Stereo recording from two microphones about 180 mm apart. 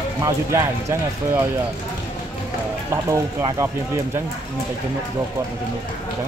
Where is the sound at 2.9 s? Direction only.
15° right (ahead or behind).